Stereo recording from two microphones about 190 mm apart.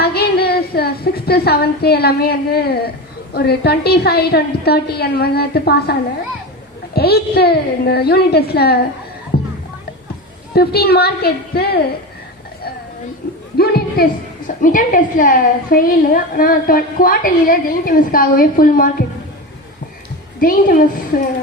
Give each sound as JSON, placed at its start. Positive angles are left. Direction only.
{"t": 0.0, "sound": "a woman's voice", "side_deg": 55}
{"t": 9.3, "sound": "music", "side_deg": 55}
{"t": 10.5, "sound": "a woman's voice", "side_deg": 55}
{"t": 13.2, "sound": "a sound", "side_deg": 50}
{"t": 13.6, "sound": "a woman's voice", "side_deg": 55}
{"t": 20.4, "sound": "a woman's voice", "side_deg": 50}